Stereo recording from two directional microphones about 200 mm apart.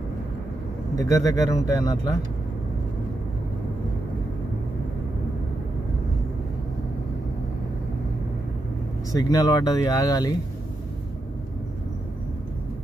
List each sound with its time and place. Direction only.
0.9 s speech: 15° left (ahead or behind)
9.1 s speech: 20° left (ahead or behind)